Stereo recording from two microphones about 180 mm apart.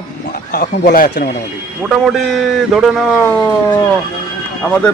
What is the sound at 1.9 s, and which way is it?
A man's voice, centre (ahead or behind).